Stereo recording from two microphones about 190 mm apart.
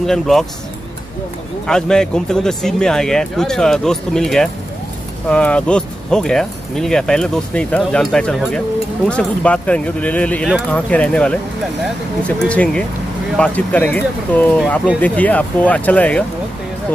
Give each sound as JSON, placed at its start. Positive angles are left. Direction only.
{"t": 0.0, "sound": "speech", "side_deg": 0}
{"t": 1.7, "sound": "speech", "side_deg": 5}